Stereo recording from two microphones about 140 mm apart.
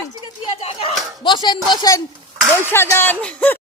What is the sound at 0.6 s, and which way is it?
Slap, 50° left (ahead or behind).